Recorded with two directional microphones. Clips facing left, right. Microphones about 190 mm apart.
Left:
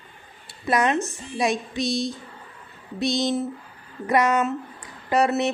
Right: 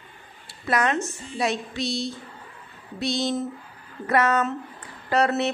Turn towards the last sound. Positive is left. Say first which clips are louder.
# left 1 dB
turn(degrees=15)  # may be behind; listen again after turning